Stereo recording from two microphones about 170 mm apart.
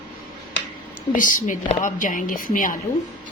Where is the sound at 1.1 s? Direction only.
50° left (ahead or behind).